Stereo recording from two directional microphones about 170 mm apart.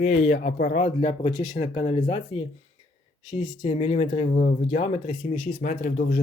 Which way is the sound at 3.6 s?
40° left (ahead or behind).